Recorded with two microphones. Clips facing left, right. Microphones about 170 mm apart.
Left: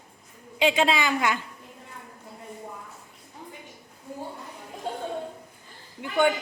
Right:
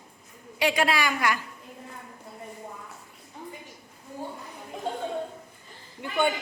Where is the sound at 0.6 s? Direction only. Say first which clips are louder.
Left 2 dB; 20° left (ahead or behind).